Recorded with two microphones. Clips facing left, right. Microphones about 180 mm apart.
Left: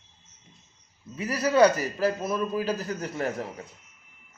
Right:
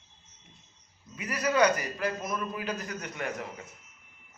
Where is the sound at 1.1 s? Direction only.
30° left (ahead or behind).